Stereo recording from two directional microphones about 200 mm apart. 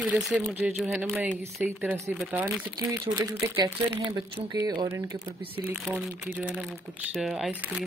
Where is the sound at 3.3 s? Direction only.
25° right (ahead or behind).